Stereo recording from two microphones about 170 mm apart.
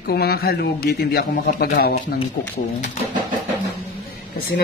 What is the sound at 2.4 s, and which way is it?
Speech, 50° left (ahead or behind).